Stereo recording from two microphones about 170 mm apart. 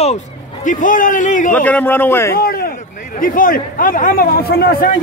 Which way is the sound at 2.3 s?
60° left (ahead or behind).